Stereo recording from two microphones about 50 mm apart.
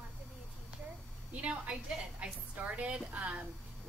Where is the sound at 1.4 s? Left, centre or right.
Centre.